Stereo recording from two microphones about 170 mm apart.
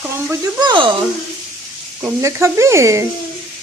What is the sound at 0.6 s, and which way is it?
Speech, 25° right (ahead or behind).